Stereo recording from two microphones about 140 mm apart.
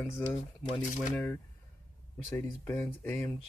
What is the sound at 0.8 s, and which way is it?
Speech, 65° left (ahead or behind).